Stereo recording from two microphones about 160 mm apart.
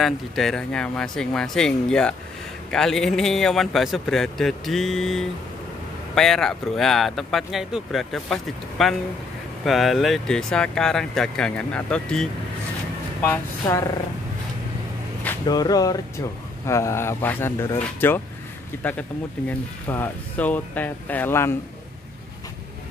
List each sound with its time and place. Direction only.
0.0 s speech: centre (ahead or behind)
15.4 s speech: 25° left (ahead or behind)